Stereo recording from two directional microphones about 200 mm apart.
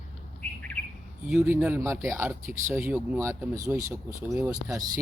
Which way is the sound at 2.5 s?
40° right (ahead or behind).